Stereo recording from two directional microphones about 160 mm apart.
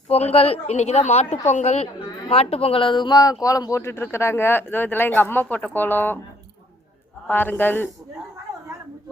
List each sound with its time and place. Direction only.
0.1 s a woman's voice: 40° left (ahead or behind); by 6.1 s 10° left (ahead or behind)
7.3 s speech: 10° left (ahead or behind)